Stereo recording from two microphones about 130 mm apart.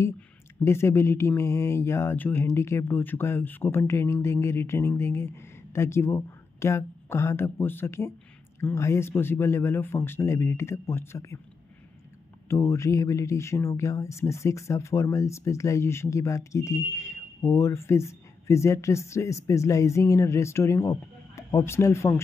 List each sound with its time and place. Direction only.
0.7 s speech: 20° left (ahead or behind)
12.4 s speech: 20° left (ahead or behind)